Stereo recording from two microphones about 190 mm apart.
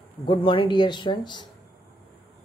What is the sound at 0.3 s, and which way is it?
Speech, 25° left (ahead or behind).